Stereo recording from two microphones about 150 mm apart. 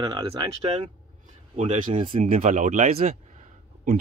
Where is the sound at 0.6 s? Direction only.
45° right (ahead or behind).